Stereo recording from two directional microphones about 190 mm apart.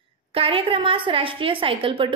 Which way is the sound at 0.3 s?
30° right (ahead or behind).